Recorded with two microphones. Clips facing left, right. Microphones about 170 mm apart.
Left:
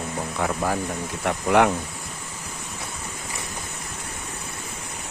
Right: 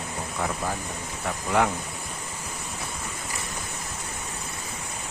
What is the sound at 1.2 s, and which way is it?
Speech, 70° left (ahead or behind).